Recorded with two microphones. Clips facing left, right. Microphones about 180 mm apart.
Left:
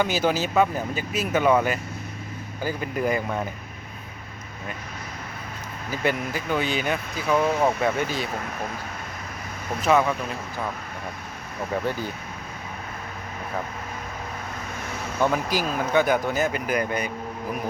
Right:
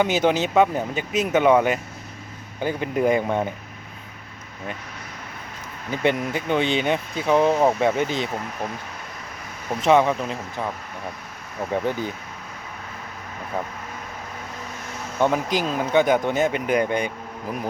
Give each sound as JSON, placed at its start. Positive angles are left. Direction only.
{"t": 0.0, "sound": "speech", "side_deg": -20}
{"t": 5.9, "sound": "speech", "side_deg": -25}
{"t": 9.8, "sound": "speech", "side_deg": -25}
{"t": 11.9, "sound": "speech", "side_deg": -20}
{"t": 15.2, "sound": "speech", "side_deg": -20}